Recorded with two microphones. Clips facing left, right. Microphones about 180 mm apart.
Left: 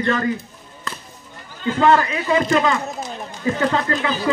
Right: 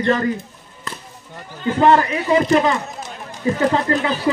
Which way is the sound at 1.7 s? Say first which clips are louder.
Right 2 dB; 20° right (ahead or behind).